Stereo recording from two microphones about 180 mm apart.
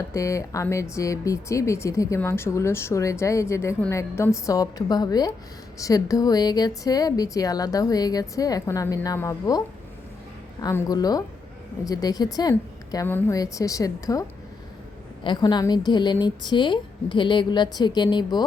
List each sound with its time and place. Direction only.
0.1 s a woman's voice: 15° left (ahead or behind)